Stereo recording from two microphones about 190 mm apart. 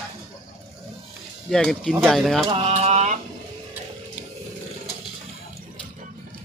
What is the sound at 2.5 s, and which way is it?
Mantra, 30° right (ahead or behind).